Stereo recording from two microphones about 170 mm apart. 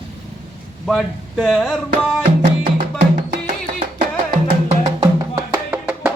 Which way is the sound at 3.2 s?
40° right (ahead or behind).